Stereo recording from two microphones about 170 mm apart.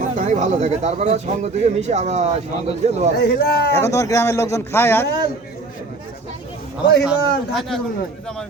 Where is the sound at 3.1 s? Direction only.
65° left (ahead or behind).